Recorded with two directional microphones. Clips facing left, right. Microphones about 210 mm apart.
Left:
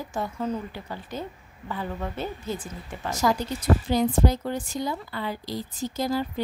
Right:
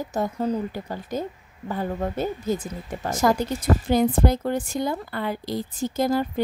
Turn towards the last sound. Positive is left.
turn(degrees=-50)  # may be behind; listen again after turning